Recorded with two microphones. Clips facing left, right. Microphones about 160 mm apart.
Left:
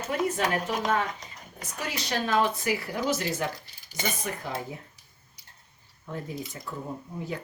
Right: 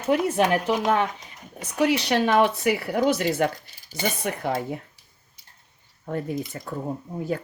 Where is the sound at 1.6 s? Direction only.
70° right (ahead or behind).